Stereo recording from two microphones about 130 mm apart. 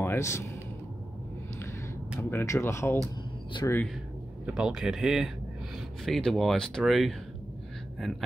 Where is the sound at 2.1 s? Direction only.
20° left (ahead or behind).